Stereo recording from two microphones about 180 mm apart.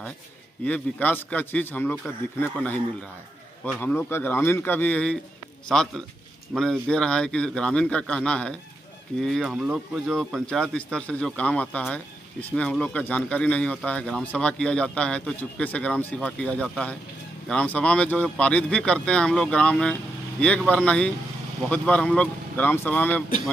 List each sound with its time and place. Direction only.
0.7 s speech: 10° left (ahead or behind)